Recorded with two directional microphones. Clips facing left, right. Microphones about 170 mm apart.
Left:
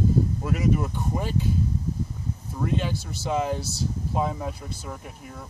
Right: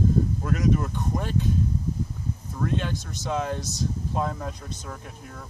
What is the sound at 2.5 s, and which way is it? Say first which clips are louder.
Speech: left 1 dB; 10° left (ahead or behind).